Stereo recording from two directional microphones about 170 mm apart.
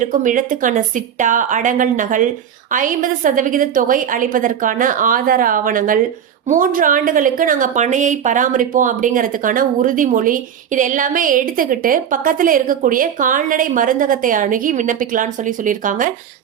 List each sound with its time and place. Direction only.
0.0 s a woman's voice: 50° right (ahead or behind)